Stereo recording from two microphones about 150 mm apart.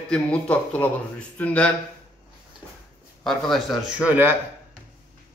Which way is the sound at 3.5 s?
Centre (ahead or behind).